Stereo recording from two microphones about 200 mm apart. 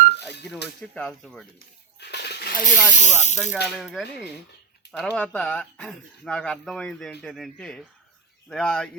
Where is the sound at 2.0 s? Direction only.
55° left (ahead or behind).